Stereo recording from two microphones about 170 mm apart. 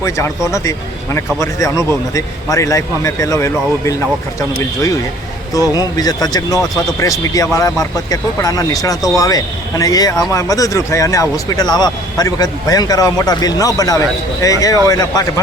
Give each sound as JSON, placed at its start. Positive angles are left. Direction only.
{"t": 0.4, "sound": "speech", "side_deg": 20}
{"t": 5.5, "sound": "speech", "side_deg": 20}